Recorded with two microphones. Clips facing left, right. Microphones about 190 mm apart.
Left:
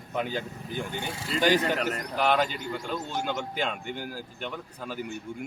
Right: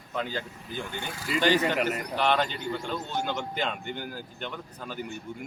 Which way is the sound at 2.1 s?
5° left (ahead or behind).